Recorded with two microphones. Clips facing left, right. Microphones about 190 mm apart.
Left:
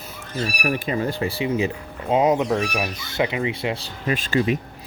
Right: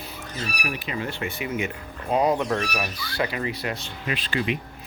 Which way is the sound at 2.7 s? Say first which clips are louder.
Left 3 dB; 20° left (ahead or behind).